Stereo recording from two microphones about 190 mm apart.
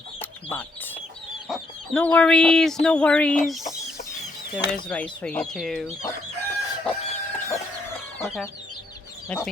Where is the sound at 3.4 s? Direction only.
Centre (ahead or behind).